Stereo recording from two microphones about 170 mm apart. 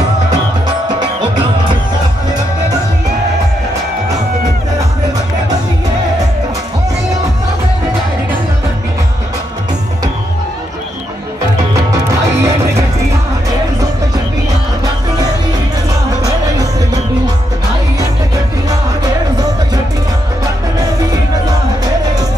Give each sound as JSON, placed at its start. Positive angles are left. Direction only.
{"t": 11.9, "sound": "music", "side_deg": -15}
{"t": 16.2, "sound": "music", "side_deg": -20}